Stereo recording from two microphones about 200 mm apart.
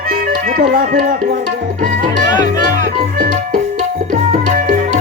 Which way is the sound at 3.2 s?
40° right (ahead or behind).